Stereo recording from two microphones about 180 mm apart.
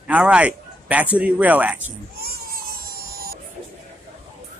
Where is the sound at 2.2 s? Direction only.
55° right (ahead or behind).